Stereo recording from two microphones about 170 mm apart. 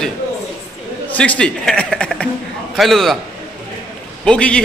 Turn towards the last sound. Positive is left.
turn(degrees=5)  # may be behind; listen again after turning